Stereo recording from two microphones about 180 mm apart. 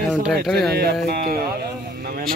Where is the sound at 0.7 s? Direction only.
60° right (ahead or behind).